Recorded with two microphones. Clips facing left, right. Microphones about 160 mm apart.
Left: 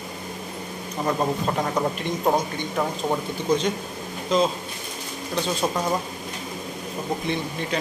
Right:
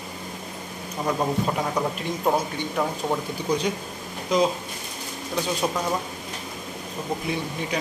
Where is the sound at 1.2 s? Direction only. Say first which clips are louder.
Right 1 dB; 5° left (ahead or behind).